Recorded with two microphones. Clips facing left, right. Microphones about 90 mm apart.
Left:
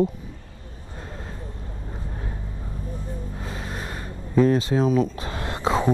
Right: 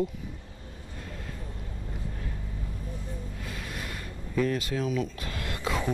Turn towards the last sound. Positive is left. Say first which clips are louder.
# left 8 dB
turn(degrees=30)  # may be behind; listen again after turning